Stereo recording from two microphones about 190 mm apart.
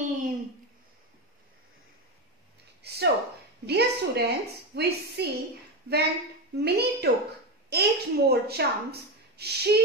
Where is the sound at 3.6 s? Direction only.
60° right (ahead or behind).